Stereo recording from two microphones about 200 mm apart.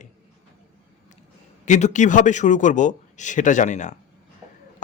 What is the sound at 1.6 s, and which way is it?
Speech, 35° left (ahead or behind).